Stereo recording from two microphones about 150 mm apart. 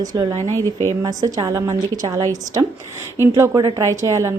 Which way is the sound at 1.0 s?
25° right (ahead or behind).